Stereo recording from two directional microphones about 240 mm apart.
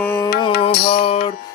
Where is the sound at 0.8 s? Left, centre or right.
Left.